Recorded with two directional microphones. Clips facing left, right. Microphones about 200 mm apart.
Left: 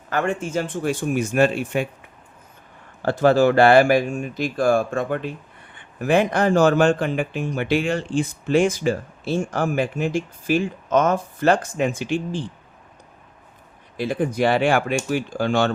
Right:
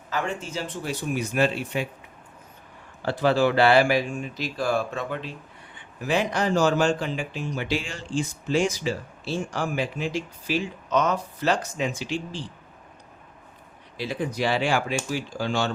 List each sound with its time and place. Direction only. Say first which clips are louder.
0.1 s speech: left 6 dB; 55° left (ahead or behind)
3.0 s speech: left 5 dB; 50° left (ahead or behind)
13.9 s speech: left 6 dB; 50° left (ahead or behind)